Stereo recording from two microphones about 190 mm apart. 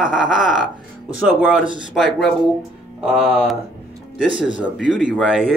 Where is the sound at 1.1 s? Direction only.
5° right (ahead or behind).